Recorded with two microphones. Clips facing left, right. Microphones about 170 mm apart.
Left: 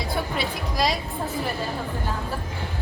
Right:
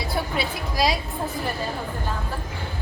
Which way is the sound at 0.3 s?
5° right (ahead or behind).